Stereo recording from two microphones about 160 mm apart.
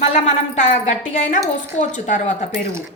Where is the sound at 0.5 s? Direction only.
50° left (ahead or behind).